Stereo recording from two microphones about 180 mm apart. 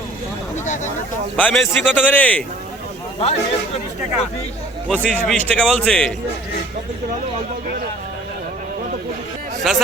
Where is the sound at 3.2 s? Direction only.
35° left (ahead or behind).